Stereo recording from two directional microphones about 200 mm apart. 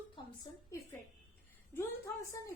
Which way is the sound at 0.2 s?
25° left (ahead or behind).